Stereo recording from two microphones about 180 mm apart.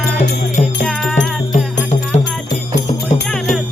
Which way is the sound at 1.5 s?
40° left (ahead or behind).